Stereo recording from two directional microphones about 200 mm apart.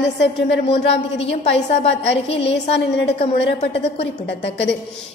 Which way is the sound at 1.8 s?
30° left (ahead or behind).